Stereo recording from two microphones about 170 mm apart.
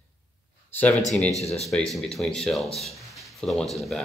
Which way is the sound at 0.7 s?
10° left (ahead or behind).